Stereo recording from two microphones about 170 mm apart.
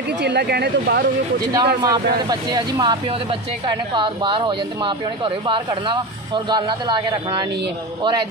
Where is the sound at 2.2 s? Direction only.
20° right (ahead or behind).